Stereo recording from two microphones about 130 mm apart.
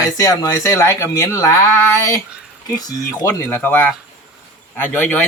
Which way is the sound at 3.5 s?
15° left (ahead or behind).